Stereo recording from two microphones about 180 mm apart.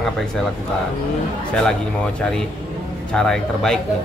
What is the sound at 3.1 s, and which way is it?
Speech, 5° left (ahead or behind).